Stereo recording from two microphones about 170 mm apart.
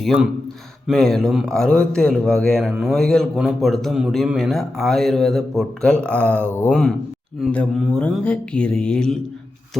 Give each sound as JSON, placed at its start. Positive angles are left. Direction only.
{"t": 0.0, "sound": "speech", "side_deg": 0}